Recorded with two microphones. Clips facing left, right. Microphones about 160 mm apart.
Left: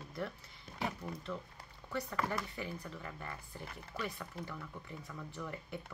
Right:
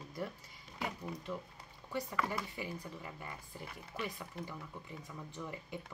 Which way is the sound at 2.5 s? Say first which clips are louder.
Even; 15° right (ahead or behind).